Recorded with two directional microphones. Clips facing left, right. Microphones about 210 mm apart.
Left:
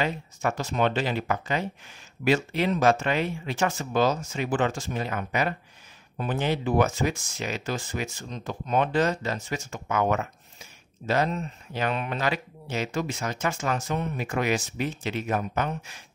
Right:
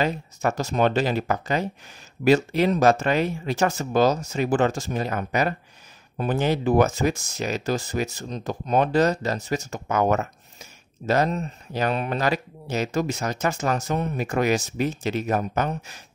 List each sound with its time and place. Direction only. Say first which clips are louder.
0.0 s speech: right 3 dB; 40° right (ahead or behind)